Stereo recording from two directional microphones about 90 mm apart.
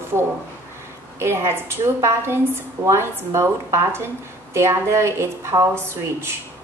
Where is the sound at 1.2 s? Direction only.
30° right (ahead or behind).